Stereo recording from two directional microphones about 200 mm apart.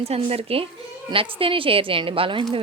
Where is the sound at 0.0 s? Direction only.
30° right (ahead or behind).